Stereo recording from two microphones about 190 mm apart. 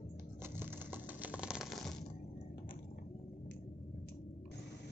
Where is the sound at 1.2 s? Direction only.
5° right (ahead or behind).